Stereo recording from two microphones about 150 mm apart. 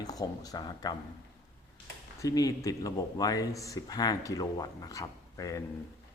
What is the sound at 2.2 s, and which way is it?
Speech, 20° left (ahead or behind).